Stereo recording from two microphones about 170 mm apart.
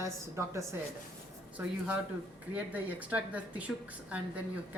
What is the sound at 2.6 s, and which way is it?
A woman's voice, 10° right (ahead or behind).